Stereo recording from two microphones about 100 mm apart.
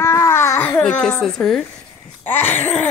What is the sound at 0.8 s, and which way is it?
Speech, 10° left (ahead or behind).